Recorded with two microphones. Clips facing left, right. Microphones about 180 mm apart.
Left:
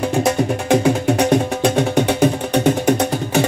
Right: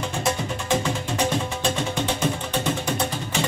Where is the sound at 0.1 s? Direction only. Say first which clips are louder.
Left 9 dB; 65° left (ahead or behind).